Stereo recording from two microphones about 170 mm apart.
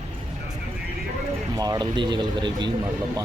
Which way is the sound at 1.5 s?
20° right (ahead or behind).